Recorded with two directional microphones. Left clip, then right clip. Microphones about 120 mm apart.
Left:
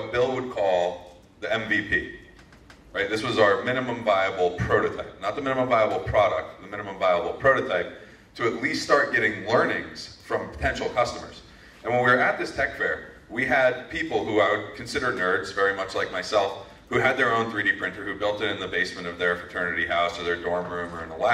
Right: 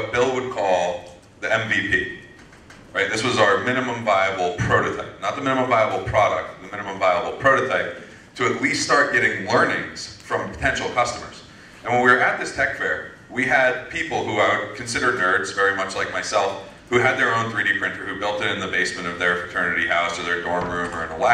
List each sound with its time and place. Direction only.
0.1 s a man's voice: 45° right (ahead or behind)